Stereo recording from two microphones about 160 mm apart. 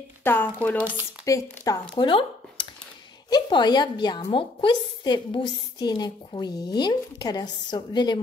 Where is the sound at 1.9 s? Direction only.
30° left (ahead or behind).